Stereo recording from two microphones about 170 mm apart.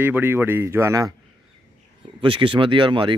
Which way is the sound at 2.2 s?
30° right (ahead or behind).